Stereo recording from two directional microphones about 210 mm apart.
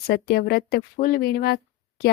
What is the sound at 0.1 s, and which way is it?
Speech, 50° left (ahead or behind).